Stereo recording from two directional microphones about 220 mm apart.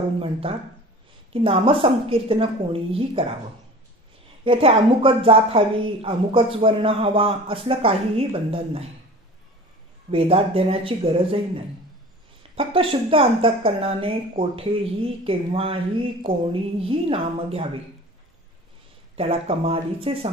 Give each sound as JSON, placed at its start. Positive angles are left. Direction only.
{"t": 0.2, "sound": "speech", "side_deg": -25}
{"t": 4.5, "sound": "speech", "side_deg": -25}
{"t": 10.1, "sound": "speech", "side_deg": -25}
{"t": 19.1, "sound": "speech", "side_deg": -25}